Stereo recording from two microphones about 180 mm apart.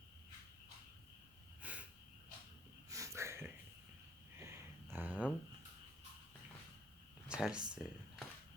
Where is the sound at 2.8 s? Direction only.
15° right (ahead or behind).